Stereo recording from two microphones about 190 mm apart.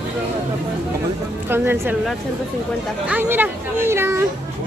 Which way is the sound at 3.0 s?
10° right (ahead or behind).